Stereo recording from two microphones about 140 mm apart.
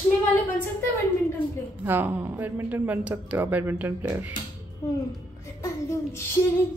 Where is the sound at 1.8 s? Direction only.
15° right (ahead or behind).